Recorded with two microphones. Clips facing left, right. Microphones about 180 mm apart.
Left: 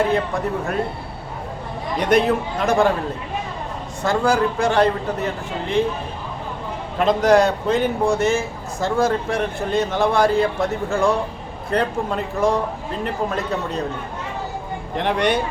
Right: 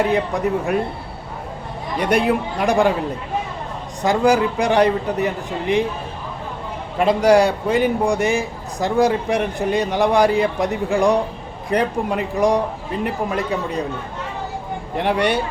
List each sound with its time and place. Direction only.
0.1 s a man's voice: 15° right (ahead or behind)
2.0 s a man's voice: 10° right (ahead or behind)
4.0 s a man's voice: 15° right (ahead or behind)
7.0 s a man's voice: 10° right (ahead or behind)
14.9 s a man's voice: 10° right (ahead or behind)